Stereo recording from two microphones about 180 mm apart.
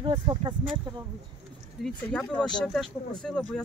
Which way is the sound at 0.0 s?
25° right (ahead or behind).